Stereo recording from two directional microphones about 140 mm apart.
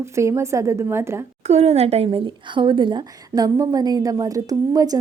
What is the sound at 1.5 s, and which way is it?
Speech, 50° right (ahead or behind).